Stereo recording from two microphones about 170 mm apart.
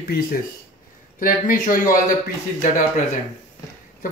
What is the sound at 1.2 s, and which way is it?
Speech, 50° left (ahead or behind).